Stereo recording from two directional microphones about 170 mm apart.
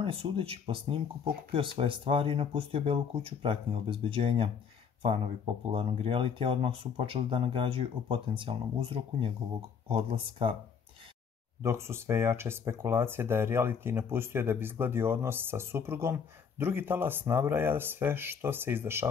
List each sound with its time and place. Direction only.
0.0 s speech: 35° right (ahead or behind)
11.6 s speech: 15° right (ahead or behind)